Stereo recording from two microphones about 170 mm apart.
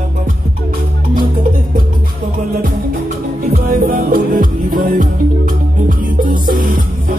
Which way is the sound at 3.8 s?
55° right (ahead or behind).